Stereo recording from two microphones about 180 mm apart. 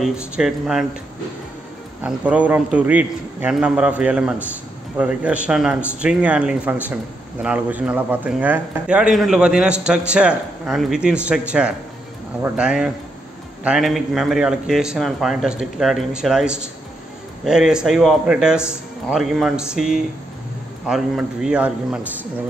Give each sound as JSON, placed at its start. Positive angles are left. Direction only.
{"t": 0.0, "sound": "a man's voice", "side_deg": -5}
{"t": 2.0, "sound": "a man's voice", "side_deg": -5}